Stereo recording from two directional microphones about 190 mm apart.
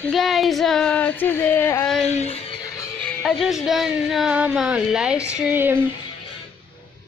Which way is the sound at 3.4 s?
Centre (ahead or behind).